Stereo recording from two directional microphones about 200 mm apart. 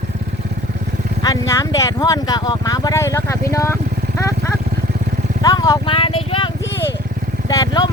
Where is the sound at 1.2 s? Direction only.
15° left (ahead or behind).